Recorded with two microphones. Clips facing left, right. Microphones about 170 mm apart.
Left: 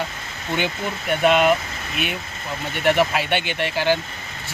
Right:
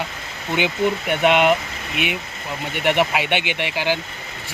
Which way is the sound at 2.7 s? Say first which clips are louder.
Left 1 dB; 15° right (ahead or behind).